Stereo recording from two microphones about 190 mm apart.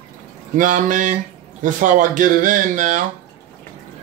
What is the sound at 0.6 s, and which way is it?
Speech, 45° right (ahead or behind).